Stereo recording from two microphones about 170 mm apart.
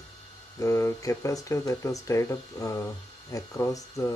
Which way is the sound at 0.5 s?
20° left (ahead or behind).